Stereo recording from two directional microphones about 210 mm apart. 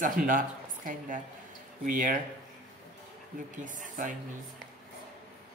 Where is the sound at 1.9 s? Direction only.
40° right (ahead or behind).